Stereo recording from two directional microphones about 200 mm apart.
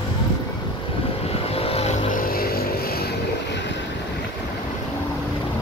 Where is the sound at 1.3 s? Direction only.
30° left (ahead or behind); by 3.6 s 50° left (ahead or behind).